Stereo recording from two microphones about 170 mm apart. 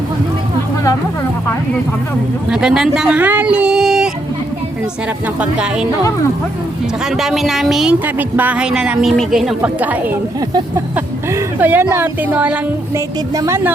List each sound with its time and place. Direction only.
2.5 s speech: 5° right (ahead or behind)
5.4 s a woman's voice: 5° right (ahead or behind)
7.0 s a woman's voice: centre (ahead or behind)
13.3 s a woman's voice: 20° right (ahead or behind)